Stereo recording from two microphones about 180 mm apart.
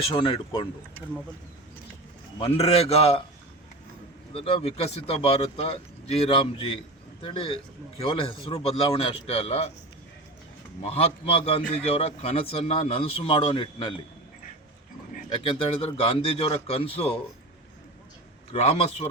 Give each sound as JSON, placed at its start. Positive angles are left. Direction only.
{"t": 0.1, "sound": "speech", "side_deg": 30}
{"t": 2.4, "sound": "a man's voice", "side_deg": 35}
{"t": 4.4, "sound": "a man's voice", "side_deg": 30}
{"t": 10.8, "sound": "a man's voice", "side_deg": 30}
{"t": 15.3, "sound": "a man's voice", "side_deg": 30}
{"t": 18.5, "sound": "a man's voice", "side_deg": 35}